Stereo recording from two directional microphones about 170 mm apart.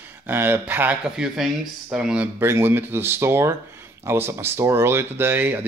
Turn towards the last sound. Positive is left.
turn(degrees=-10)  # may be behind; listen again after turning